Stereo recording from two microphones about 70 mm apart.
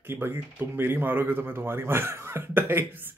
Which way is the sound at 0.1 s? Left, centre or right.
Right.